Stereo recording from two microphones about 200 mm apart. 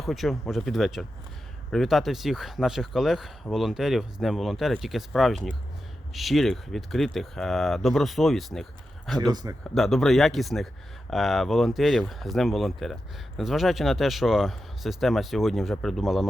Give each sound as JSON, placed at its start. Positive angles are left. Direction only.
{"t": 0.0, "sound": "speech", "side_deg": 0}
{"t": 9.1, "sound": "speech", "side_deg": -20}
{"t": 9.7, "sound": "speech", "side_deg": 0}